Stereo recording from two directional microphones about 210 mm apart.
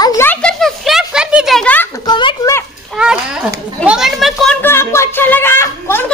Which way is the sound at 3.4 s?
5° right (ahead or behind).